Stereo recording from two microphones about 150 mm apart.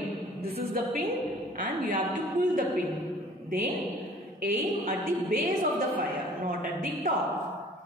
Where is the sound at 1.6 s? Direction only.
60° right (ahead or behind).